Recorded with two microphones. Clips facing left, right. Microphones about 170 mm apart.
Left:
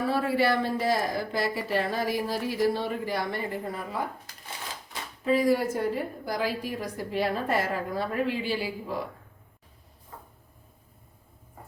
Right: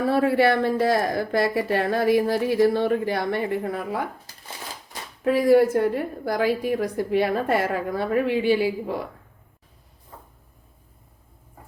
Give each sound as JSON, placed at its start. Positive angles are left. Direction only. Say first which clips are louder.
{"t": 0.1, "sound": "speech", "louder": "right 6 dB", "side_deg": -60}
{"t": 5.2, "sound": "speech", "louder": "right 7 dB", "side_deg": -65}